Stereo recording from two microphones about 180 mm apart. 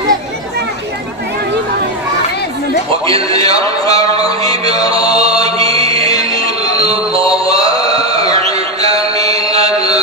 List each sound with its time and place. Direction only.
3.1 s music: 20° left (ahead or behind)
5.0 s chant: 20° left (ahead or behind)